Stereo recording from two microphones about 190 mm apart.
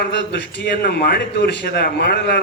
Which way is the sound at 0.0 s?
65° left (ahead or behind).